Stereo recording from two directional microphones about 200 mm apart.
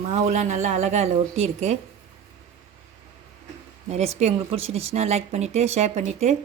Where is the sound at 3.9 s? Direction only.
30° right (ahead or behind).